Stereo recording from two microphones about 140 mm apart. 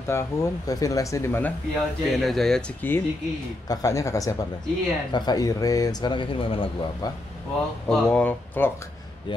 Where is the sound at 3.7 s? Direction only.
25° left (ahead or behind); by 7.1 s 40° left (ahead or behind).